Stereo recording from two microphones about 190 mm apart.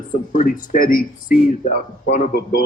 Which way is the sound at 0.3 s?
45° left (ahead or behind).